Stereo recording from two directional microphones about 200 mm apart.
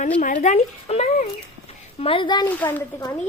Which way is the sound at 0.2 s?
40° left (ahead or behind).